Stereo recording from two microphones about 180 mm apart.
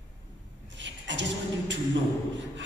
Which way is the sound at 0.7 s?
90° right.